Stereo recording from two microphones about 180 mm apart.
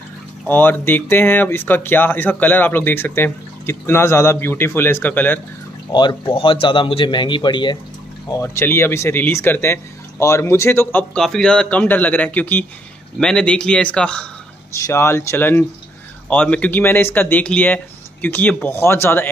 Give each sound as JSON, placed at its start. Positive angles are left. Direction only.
{"t": 0.5, "sound": "speech", "side_deg": 10}
{"t": 5.9, "sound": "speech", "side_deg": 25}
{"t": 8.3, "sound": "a man's voice", "side_deg": 15}